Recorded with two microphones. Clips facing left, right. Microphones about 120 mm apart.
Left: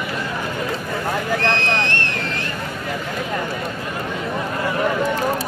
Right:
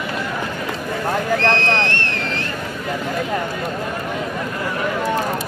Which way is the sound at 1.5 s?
15° left (ahead or behind).